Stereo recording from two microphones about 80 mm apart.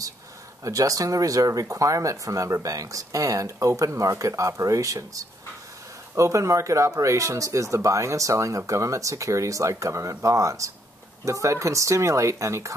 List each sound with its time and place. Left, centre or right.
0.7 s speech: right